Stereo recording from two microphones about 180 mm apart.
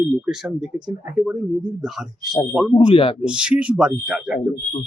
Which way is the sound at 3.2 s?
5° right (ahead or behind).